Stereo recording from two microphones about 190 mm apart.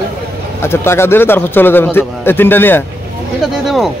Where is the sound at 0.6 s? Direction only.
10° left (ahead or behind).